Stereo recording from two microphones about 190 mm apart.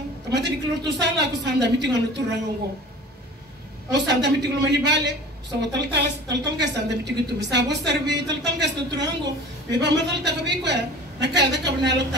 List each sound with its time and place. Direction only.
0.3 s a woman's voice: 65° right (ahead or behind)
3.9 s a woman's voice: 65° right (ahead or behind)